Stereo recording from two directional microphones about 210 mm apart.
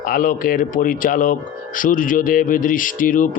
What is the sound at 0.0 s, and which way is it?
Speech, 40° left (ahead or behind).